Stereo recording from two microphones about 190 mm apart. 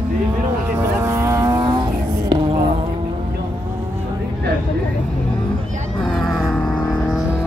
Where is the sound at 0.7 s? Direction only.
10° right (ahead or behind).